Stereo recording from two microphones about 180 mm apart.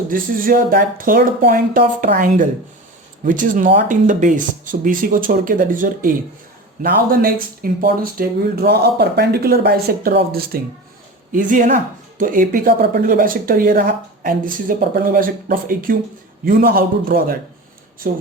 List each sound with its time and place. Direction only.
0.1 s speech: 50° right (ahead or behind)
11.3 s speech: 45° right (ahead or behind)